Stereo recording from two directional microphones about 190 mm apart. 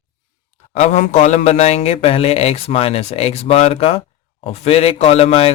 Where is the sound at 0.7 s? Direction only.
35° left (ahead or behind).